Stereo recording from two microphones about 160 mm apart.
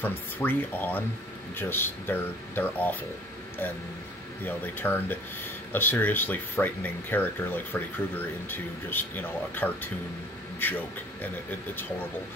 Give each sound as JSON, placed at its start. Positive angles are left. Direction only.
{"t": 0.0, "sound": "speech", "side_deg": 10}
{"t": 4.5, "sound": "speech", "side_deg": 10}